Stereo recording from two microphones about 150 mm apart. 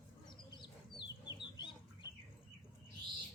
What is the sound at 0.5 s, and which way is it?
Chicken, 30° left (ahead or behind).